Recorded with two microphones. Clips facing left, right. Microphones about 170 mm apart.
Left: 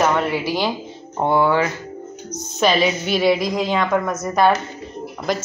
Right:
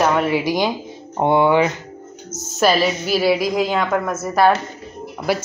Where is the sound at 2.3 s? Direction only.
5° right (ahead or behind).